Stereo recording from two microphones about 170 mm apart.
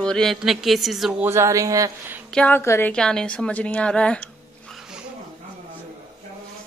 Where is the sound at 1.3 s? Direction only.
15° right (ahead or behind).